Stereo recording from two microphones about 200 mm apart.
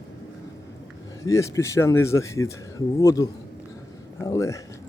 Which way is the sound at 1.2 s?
15° left (ahead or behind).